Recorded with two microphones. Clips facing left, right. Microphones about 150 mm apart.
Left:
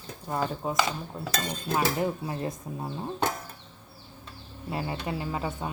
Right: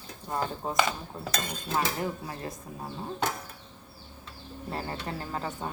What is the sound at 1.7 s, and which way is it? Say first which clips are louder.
Speech: left 3 dB; 20° left (ahead or behind).